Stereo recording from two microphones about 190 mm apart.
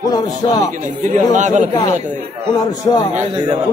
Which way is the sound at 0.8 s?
40° right (ahead or behind).